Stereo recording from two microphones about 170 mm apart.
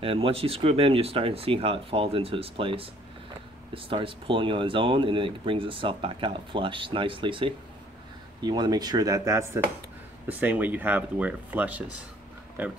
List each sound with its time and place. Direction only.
0.0 s speech: 35° right (ahead or behind); by 12.7 s 10° right (ahead or behind)